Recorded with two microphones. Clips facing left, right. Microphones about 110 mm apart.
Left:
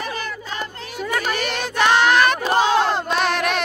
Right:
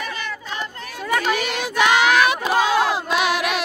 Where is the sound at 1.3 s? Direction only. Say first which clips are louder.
Right 1 dB; 10° right (ahead or behind).